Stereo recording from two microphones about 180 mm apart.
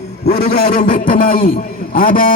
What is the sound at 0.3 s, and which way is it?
Speech, 65° left (ahead or behind).